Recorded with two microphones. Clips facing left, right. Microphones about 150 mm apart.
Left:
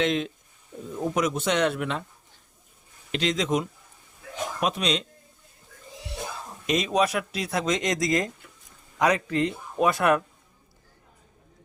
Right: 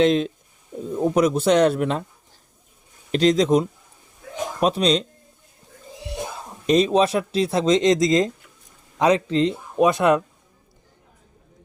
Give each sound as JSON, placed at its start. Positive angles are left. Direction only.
{"t": 0.0, "sound": "speech", "side_deg": -35}
{"t": 3.1, "sound": "speech", "side_deg": -40}
{"t": 6.7, "sound": "speech", "side_deg": -30}